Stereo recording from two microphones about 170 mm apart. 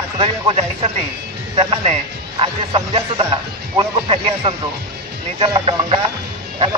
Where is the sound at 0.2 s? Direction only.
35° right (ahead or behind).